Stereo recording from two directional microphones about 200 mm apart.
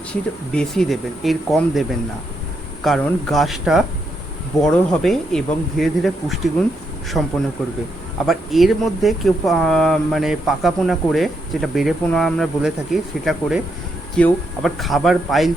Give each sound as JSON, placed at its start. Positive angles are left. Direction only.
{"t": 0.1, "sound": "speech", "side_deg": 5}
{"t": 2.8, "sound": "speech", "side_deg": 0}